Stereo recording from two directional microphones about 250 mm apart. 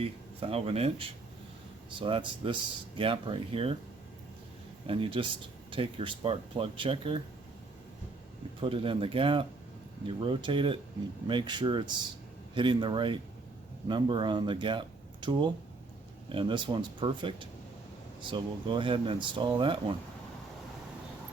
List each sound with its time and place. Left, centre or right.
0.0 s speech: right
4.9 s speech: right
8.6 s speech: right